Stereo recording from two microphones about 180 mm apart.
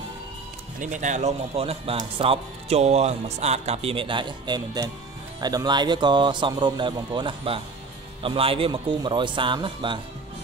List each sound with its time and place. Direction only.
0.7 s speech: 45° right (ahead or behind); by 9.9 s 25° right (ahead or behind)